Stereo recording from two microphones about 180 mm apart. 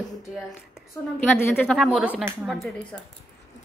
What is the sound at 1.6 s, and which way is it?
Speech, centre (ahead or behind).